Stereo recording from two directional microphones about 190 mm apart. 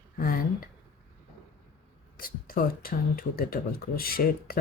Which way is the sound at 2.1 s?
50° left (ahead or behind).